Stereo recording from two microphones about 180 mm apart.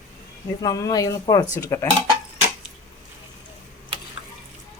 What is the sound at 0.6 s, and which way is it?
Speech, 20° left (ahead or behind).